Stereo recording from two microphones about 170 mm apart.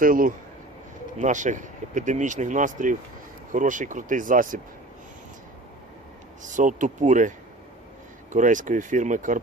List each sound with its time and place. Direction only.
0.0 s speech: 55° right (ahead or behind)
6.4 s speech: 50° right (ahead or behind)